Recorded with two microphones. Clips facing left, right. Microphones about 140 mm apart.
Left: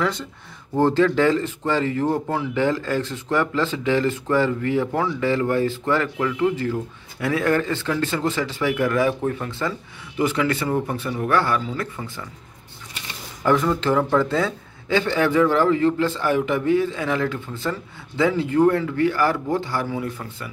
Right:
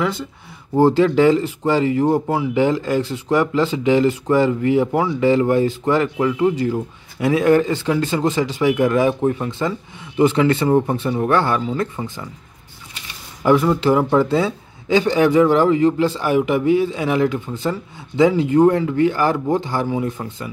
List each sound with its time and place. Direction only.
0.0 s speech: 5° right (ahead or behind); by 12.3 s 20° right (ahead or behind)
13.4 s speech: 10° right (ahead or behind)